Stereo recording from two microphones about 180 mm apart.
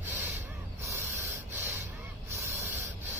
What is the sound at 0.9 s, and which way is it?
Snort, 15° right (ahead or behind).